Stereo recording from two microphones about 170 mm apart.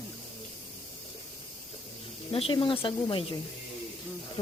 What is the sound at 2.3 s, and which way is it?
Speech, 30° left (ahead or behind).